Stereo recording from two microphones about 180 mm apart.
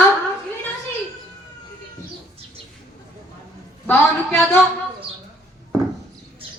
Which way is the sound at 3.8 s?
10° left (ahead or behind).